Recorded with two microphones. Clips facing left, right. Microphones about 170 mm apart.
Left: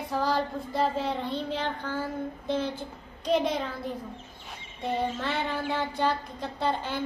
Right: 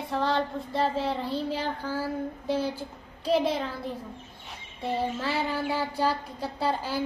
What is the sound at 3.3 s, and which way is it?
Child singing, 5° right (ahead or behind).